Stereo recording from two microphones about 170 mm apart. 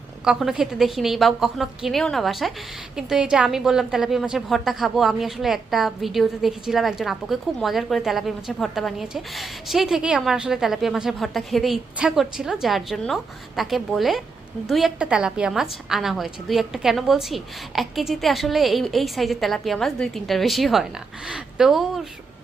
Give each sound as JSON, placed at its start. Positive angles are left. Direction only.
{"t": 0.3, "sound": "a woman's voice", "side_deg": 0}